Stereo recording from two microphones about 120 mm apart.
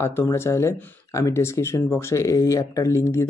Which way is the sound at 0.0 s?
20° left (ahead or behind).